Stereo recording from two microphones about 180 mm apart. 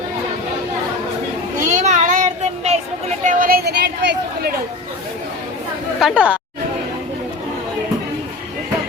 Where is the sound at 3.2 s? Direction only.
50° right (ahead or behind); by 4.5 s 65° right (ahead or behind).